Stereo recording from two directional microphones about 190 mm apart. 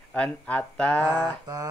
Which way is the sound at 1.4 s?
20° right (ahead or behind).